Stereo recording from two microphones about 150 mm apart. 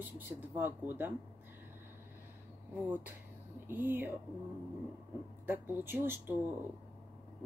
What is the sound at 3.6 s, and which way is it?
Speech, 15° right (ahead or behind).